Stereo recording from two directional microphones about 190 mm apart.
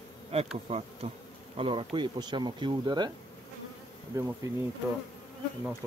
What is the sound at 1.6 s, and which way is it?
Speech, 25° right (ahead or behind).